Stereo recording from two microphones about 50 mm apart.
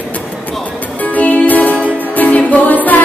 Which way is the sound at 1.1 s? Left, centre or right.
Left.